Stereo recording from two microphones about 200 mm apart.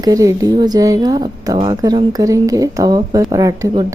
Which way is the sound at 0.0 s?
15° right (ahead or behind).